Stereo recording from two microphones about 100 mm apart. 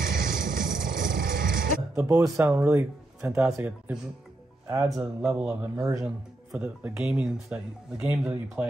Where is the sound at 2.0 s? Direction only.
30° right (ahead or behind).